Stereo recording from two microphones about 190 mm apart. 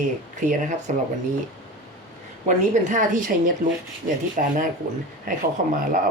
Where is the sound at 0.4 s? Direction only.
45° right (ahead or behind).